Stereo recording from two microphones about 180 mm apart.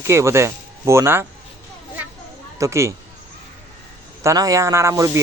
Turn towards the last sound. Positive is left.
turn(degrees=-20)  # may be behind; listen again after turning